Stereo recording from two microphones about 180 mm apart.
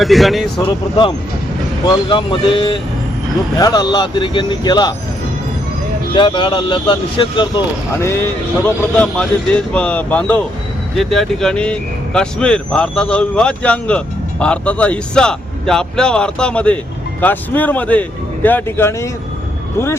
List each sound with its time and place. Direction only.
0.0 s speech: centre (ahead or behind)
0.6 s speech: 30° left (ahead or behind)
6.1 s speech: 25° left (ahead or behind)
8.6 s speech: 5° left (ahead or behind)